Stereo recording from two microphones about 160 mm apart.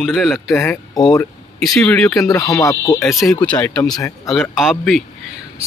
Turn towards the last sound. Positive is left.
turn(degrees=0)  # may be behind; listen again after turning